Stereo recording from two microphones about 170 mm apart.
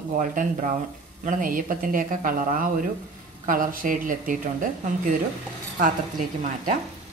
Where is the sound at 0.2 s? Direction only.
50° right (ahead or behind).